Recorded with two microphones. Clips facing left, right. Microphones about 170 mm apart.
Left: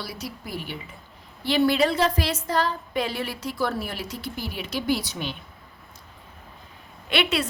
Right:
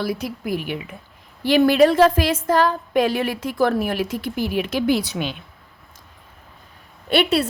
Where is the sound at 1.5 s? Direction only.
45° right (ahead or behind).